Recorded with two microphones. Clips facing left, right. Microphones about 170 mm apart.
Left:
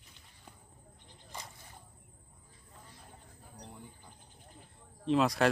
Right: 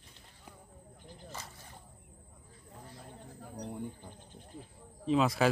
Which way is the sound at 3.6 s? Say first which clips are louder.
Right 10 dB; 55° right (ahead or behind).